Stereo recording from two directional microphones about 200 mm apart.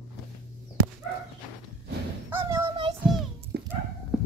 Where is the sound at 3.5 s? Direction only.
55° right (ahead or behind).